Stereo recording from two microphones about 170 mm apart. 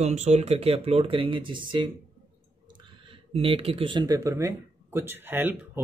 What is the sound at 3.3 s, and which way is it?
Speech, 35° right (ahead or behind).